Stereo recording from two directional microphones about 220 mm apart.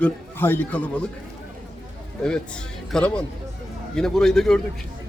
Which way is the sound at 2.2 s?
5° left (ahead or behind).